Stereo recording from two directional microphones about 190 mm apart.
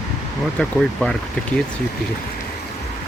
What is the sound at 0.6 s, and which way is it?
Speech, 5° left (ahead or behind).